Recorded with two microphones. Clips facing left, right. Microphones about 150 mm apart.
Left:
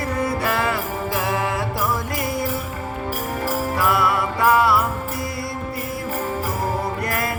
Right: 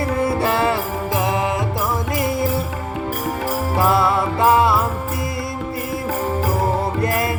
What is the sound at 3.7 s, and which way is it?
Music, 25° right (ahead or behind).